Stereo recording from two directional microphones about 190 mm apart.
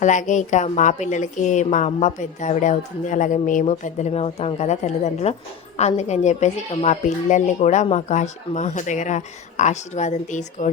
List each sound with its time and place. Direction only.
0.0 s a woman's voice: 40° left (ahead or behind)